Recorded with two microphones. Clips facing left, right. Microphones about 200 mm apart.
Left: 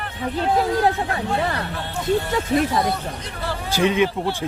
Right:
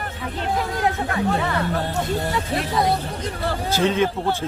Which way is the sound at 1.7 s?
40° right (ahead or behind).